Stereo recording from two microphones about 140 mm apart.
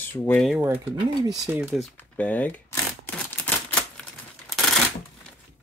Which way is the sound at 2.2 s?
10° left (ahead or behind).